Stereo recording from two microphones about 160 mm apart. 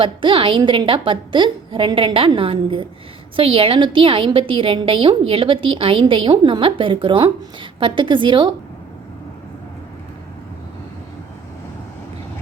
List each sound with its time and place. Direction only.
0.0 s a woman's voice: 30° right (ahead or behind)